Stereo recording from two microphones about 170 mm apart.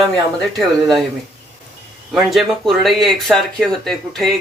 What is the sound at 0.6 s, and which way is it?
Speech, centre (ahead or behind).